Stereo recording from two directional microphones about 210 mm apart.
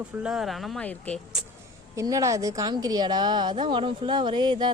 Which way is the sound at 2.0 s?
15° right (ahead or behind).